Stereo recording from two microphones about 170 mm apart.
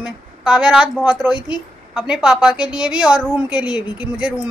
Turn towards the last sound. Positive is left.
turn(degrees=-5)  # may be behind; listen again after turning